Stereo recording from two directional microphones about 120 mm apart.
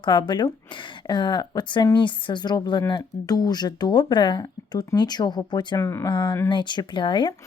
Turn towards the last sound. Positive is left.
turn(degrees=40)  # may be behind; listen again after turning